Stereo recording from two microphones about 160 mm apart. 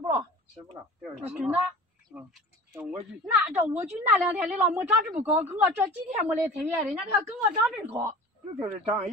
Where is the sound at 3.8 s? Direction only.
10° right (ahead or behind).